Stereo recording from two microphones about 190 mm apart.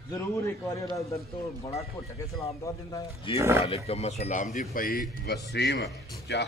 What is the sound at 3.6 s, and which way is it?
Speech, 30° left (ahead or behind).